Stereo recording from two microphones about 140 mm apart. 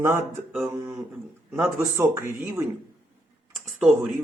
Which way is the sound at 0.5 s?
Centre (ahead or behind).